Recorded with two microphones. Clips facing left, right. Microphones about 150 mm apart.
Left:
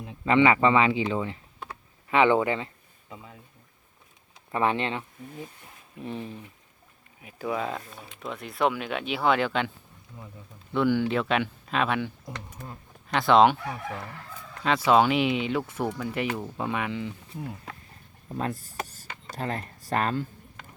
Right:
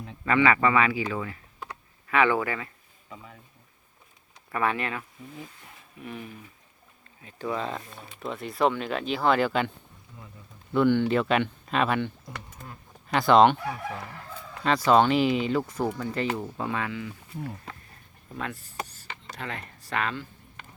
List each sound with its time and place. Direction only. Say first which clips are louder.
0.3 s speech: left 2 dB; 20° left (ahead or behind)
4.5 s speech: left 2 dB; 25° left (ahead or behind)
7.2 s speech: left 1 dB; 10° left (ahead or behind)
14.6 s speech: even; centre (ahead or behind)
16.6 s speech: left 1 dB; 15° left (ahead or behind)
18.3 s speech: left 4 dB; 35° left (ahead or behind)
18.9 s a sound: even; 40° left (ahead or behind)